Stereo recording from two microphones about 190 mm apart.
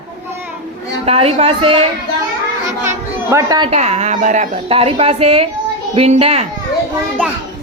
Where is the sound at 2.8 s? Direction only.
15° right (ahead or behind).